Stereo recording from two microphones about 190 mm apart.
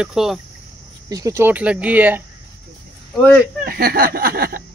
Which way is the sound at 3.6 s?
50° right (ahead or behind).